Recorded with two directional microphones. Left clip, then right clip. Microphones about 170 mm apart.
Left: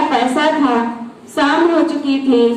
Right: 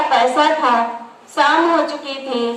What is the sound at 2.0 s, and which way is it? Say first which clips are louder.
Speech: left 8 dB; 55° right (ahead or behind).